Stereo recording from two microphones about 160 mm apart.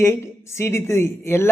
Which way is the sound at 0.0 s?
15° left (ahead or behind).